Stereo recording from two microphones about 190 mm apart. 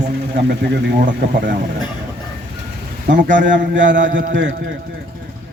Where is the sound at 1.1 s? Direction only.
45° right (ahead or behind).